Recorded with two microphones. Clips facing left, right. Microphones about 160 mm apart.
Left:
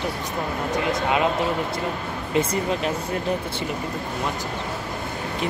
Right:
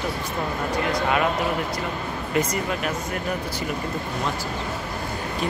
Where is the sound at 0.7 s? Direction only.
20° left (ahead or behind).